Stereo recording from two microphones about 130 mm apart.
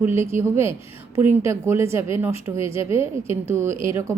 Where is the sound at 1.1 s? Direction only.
20° right (ahead or behind).